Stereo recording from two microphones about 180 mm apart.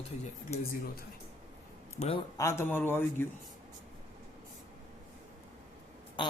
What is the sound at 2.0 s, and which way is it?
Speech, 30° left (ahead or behind).